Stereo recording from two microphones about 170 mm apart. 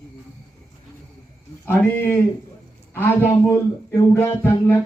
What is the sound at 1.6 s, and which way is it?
Speech, 10° left (ahead or behind).